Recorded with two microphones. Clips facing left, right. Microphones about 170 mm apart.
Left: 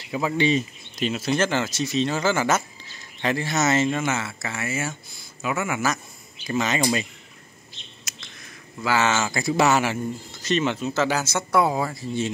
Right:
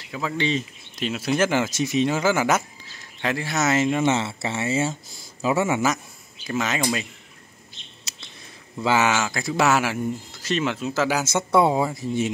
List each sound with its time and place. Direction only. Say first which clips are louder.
0.1 s speech: left 3 dB; 10° left (ahead or behind)
0.9 s speech: even; centre (ahead or behind)
4.0 s speech: right 5 dB; 25° right (ahead or behind)
6.5 s speech: left 1 dB; 5° right (ahead or behind)
8.8 s speech: right 1 dB; 15° right (ahead or behind)
11.2 s speech: right 2 dB; 25° right (ahead or behind)